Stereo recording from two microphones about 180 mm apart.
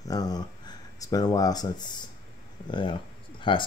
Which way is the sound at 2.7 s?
25° left (ahead or behind).